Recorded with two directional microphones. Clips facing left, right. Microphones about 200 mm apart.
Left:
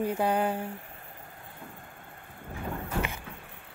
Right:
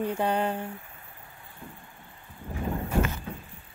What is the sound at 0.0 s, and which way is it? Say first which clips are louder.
Speech: even; 10° left (ahead or behind).